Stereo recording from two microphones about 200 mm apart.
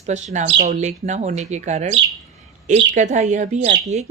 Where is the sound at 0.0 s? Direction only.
35° right (ahead or behind).